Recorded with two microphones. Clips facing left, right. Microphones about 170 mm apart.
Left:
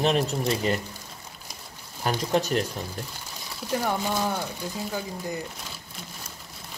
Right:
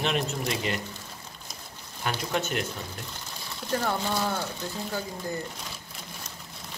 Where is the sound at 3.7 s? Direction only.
10° left (ahead or behind).